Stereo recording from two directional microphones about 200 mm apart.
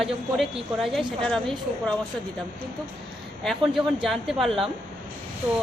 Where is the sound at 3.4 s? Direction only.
Centre (ahead or behind).